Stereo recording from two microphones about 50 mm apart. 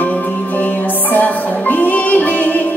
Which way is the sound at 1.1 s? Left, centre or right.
Left.